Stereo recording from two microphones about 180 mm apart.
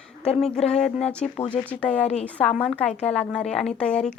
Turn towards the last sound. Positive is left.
turn(degrees=5)  # may be behind; listen again after turning